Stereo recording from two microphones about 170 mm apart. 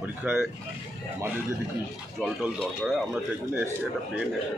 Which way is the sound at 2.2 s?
5° right (ahead or behind).